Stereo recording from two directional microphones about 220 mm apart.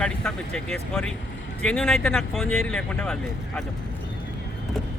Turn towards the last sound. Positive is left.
turn(degrees=5)  # may be behind; listen again after turning